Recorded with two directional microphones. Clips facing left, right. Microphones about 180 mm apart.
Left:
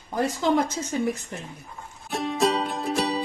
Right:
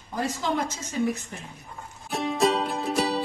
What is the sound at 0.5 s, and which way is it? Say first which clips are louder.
Speech: left 4 dB; 55° left (ahead or behind).